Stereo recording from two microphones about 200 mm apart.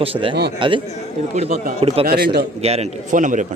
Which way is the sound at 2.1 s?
50° right (ahead or behind).